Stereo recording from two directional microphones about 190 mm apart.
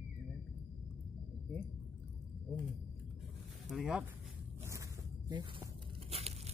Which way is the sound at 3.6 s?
5° right (ahead or behind).